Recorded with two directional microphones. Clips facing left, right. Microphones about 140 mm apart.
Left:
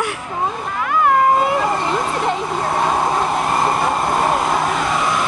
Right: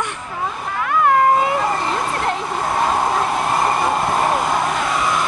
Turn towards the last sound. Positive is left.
turn(degrees=0)  # may be behind; listen again after turning